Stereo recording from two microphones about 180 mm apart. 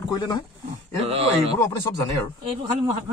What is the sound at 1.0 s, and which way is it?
Speech, 35° right (ahead or behind).